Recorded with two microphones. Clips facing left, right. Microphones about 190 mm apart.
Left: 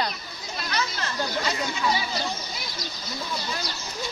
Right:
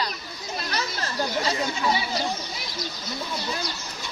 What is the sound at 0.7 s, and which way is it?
Speech, 35° right (ahead or behind).